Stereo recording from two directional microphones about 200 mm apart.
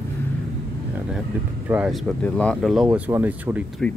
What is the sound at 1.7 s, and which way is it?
Speech, 5° right (ahead or behind).